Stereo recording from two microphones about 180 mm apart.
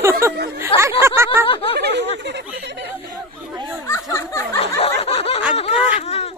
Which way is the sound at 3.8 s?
15° left (ahead or behind).